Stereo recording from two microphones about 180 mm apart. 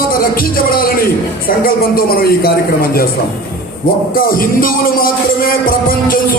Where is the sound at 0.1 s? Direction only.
55° left (ahead or behind).